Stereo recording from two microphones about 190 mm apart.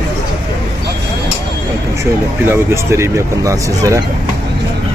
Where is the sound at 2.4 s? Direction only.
10° right (ahead or behind).